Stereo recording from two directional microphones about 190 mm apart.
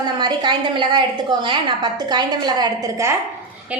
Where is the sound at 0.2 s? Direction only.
25° right (ahead or behind).